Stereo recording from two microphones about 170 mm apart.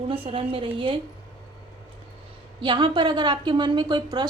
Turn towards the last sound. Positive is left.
turn(degrees=-25)  # may be behind; listen again after turning